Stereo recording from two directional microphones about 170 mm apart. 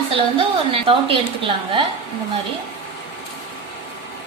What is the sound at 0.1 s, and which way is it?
A woman's voice, 35° right (ahead or behind).